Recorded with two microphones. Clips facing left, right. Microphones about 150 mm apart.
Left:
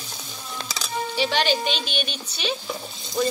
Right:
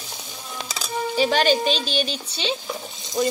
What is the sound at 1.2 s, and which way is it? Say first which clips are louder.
Speech: right 4 dB; 40° right (ahead or behind).